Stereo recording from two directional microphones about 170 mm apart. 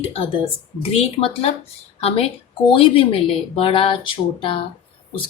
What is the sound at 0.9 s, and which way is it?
A woman's voice, 30° left (ahead or behind).